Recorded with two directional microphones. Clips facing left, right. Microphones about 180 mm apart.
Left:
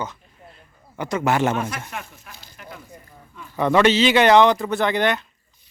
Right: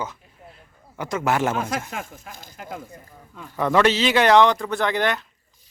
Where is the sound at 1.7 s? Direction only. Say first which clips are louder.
Right 4 dB; 90° right.